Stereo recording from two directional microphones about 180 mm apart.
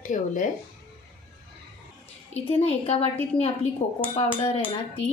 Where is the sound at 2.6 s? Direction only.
35° left (ahead or behind).